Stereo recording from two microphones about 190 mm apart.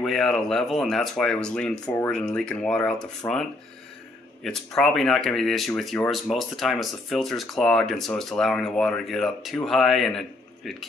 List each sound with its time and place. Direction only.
0.0 s speech: centre (ahead or behind)